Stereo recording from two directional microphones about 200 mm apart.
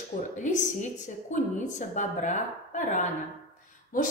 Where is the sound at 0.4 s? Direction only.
40° left (ahead or behind).